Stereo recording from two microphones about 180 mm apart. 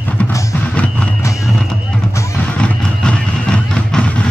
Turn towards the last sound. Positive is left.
turn(degrees=5)  # may be behind; listen again after turning